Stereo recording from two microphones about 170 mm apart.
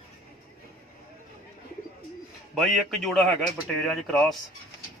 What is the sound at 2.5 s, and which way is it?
A man's voice, centre (ahead or behind).